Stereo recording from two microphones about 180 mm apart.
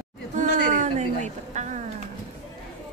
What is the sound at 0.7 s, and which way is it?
Speech, 40° right (ahead or behind).